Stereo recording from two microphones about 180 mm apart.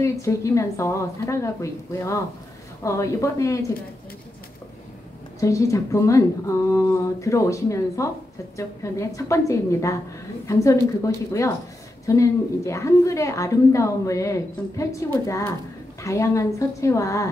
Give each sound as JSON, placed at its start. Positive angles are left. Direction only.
{"t": 0.0, "sound": "a woman's voice", "side_deg": 15}
{"t": 5.4, "sound": "a woman's voice", "side_deg": 15}